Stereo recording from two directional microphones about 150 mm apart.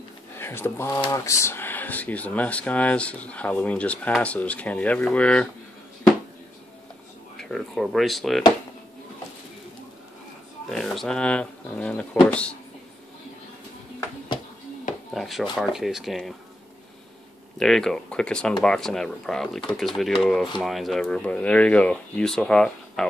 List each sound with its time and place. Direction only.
0.4 s speech: 15° left (ahead or behind)
7.3 s speech: 5° left (ahead or behind)
10.7 s speech: centre (ahead or behind)
15.1 s speech: centre (ahead or behind)
17.6 s speech: 5° left (ahead or behind)